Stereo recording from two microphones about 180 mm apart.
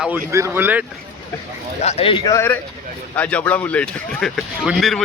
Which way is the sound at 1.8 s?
35° left (ahead or behind).